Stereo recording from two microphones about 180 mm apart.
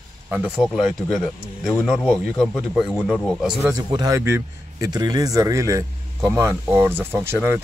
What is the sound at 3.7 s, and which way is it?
A man's voice, 20° right (ahead or behind).